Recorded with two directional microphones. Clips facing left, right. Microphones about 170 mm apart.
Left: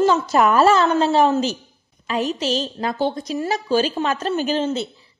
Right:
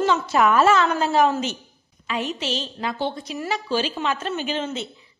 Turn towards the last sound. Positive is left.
turn(degrees=35)  # may be behind; listen again after turning